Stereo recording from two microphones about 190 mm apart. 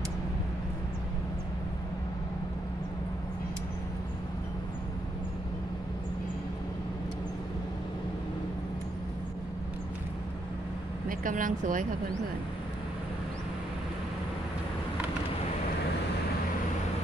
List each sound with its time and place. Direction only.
11.1 s speech: 45° right (ahead or behind)